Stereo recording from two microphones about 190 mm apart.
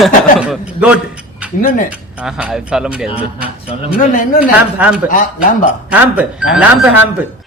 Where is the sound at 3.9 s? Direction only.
45° left (ahead or behind).